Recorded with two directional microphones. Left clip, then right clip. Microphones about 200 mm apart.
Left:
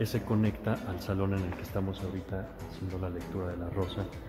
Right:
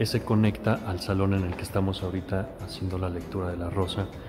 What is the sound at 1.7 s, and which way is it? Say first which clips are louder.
Speech: right 9 dB; 15° right (ahead or behind).